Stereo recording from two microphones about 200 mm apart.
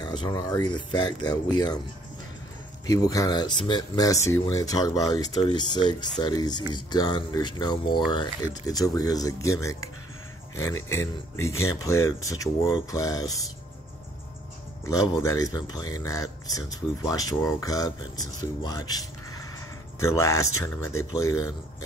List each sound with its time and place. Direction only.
0.0 s speech: 20° left (ahead or behind)
2.9 s speech: 15° left (ahead or behind)
14.9 s speech: 15° left (ahead or behind)